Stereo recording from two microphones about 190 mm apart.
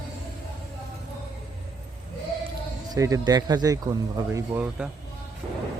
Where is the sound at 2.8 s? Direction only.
15° right (ahead or behind).